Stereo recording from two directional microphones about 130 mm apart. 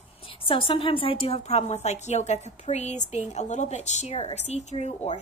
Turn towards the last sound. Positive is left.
turn(degrees=55)  # may be behind; listen again after turning